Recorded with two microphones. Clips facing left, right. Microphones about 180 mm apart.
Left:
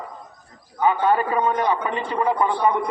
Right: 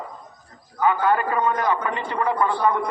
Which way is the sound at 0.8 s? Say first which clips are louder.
Left 1 dB; 20° left (ahead or behind).